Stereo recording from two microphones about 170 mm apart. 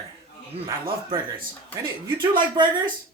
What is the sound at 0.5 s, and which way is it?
Speech, 30° right (ahead or behind).